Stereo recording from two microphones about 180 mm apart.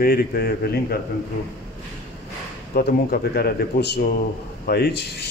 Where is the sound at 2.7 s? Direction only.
55° left (ahead or behind).